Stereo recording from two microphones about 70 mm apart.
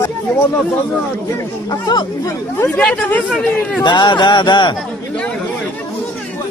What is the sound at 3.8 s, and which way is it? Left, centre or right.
Speech, left.